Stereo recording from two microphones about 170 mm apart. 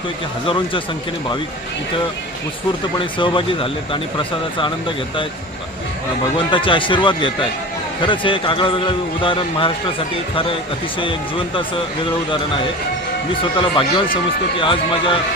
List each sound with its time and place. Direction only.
0.4 s speech: 30° left (ahead or behind)
3.0 s speech: 30° left (ahead or behind)
6.3 s speech: 30° left (ahead or behind)
11.0 s speech: 30° left (ahead or behind)
13.4 s speech: 30° left (ahead or behind)